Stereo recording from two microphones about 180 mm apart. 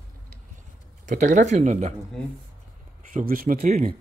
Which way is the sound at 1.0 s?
45° right (ahead or behind).